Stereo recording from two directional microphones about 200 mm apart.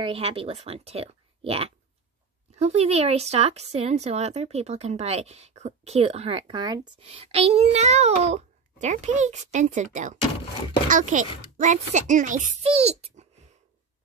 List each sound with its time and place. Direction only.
0.0 s speech: 30° right (ahead or behind)